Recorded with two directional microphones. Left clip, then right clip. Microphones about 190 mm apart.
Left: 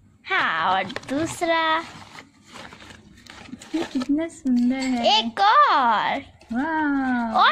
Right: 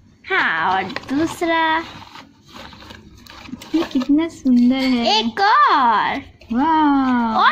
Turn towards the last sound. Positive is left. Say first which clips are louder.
# right 7 dB
turn(degrees=0)  # may be behind; listen again after turning